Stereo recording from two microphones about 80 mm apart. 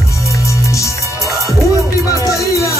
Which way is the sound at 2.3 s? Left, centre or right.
Left.